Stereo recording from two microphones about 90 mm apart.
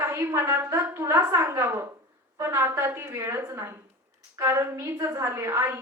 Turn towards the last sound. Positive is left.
turn(degrees=-30)  # may be behind; listen again after turning